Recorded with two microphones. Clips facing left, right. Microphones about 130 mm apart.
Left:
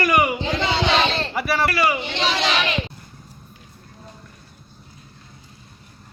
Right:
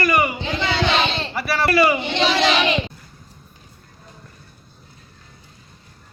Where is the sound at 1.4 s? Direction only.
10° left (ahead or behind).